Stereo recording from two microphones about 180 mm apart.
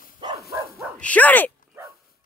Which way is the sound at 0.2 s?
25° right (ahead or behind).